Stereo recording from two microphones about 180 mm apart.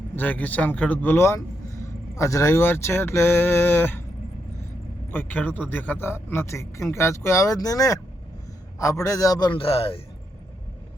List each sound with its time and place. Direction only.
0.2 s speech: 10° left (ahead or behind)
5.1 s a man's voice: 10° left (ahead or behind); by 10.0 s 30° left (ahead or behind)